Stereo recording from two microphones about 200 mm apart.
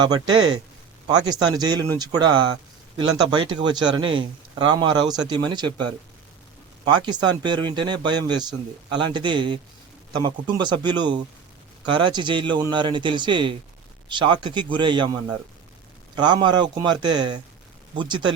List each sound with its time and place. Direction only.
0.0 s speech: 20° right (ahead or behind)
6.8 s speech: 20° right (ahead or behind)